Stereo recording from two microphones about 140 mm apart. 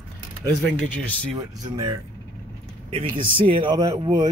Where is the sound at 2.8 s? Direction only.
40° right (ahead or behind).